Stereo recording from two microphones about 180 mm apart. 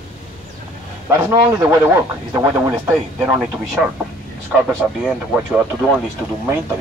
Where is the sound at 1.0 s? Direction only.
15° right (ahead or behind).